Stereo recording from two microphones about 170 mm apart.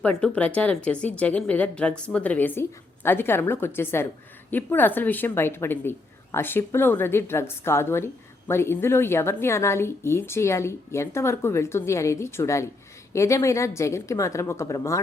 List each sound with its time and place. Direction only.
0.0 s a woman's voice: 10° left (ahead or behind)